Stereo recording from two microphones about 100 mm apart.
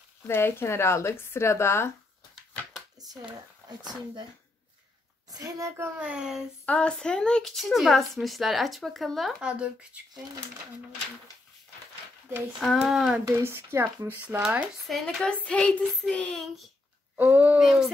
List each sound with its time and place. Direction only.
0.3 s speech: 25° left (ahead or behind)
3.0 s speech: 40° right (ahead or behind)
5.3 s a child's voice: 35° right (ahead or behind)
5.9 s speech: 10° right (ahead or behind)
6.6 s speech: 10° left (ahead or behind); by 9.7 s 10° right (ahead or behind)
12.5 s speech: centre (ahead or behind)
13.2 s speech: 25° right (ahead or behind)
14.9 s a child's voice: 5° left (ahead or behind)
17.2 s speech: 20° right (ahead or behind)
17.6 s speech: centre (ahead or behind)